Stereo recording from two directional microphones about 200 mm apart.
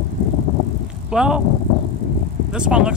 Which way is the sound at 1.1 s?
5° right (ahead or behind).